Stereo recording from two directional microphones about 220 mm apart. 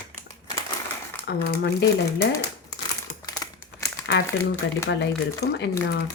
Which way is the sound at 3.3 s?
15° left (ahead or behind).